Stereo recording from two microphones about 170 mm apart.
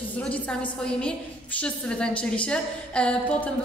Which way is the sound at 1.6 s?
5° left (ahead or behind).